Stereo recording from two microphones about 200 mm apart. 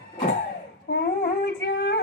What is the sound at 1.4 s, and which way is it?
Singing, 60° left (ahead or behind).